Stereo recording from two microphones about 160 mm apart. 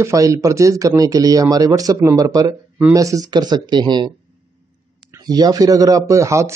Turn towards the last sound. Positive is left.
turn(degrees=-20)  # may be behind; listen again after turning